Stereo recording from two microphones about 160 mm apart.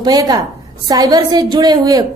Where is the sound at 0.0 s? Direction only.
25° right (ahead or behind).